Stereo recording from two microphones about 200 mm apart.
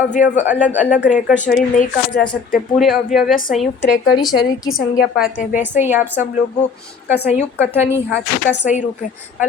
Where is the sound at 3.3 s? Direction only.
45° left (ahead or behind).